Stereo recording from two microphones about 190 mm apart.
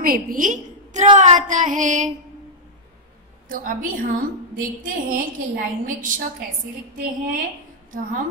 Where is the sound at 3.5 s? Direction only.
45° right (ahead or behind).